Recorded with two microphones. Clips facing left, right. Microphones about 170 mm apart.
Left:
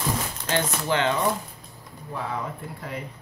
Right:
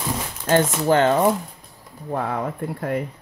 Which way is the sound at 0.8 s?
45° right (ahead or behind).